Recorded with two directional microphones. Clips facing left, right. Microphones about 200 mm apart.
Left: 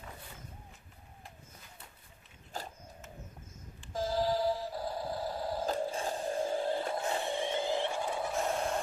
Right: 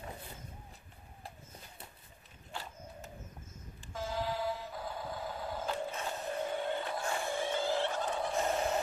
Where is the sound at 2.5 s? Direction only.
40° left (ahead or behind).